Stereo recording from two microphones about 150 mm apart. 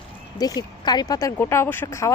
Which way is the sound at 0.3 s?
25° left (ahead or behind).